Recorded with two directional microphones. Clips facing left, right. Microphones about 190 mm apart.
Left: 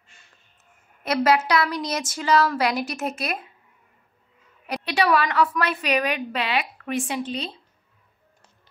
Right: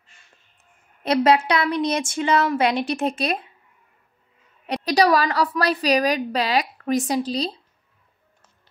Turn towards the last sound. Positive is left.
turn(degrees=-35)  # may be behind; listen again after turning